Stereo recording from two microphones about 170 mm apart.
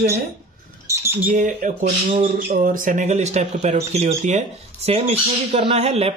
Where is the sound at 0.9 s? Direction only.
15° right (ahead or behind).